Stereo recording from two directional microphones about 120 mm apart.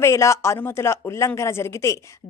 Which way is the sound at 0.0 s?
25° left (ahead or behind).